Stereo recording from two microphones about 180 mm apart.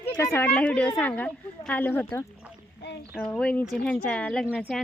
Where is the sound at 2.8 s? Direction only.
70° left (ahead or behind).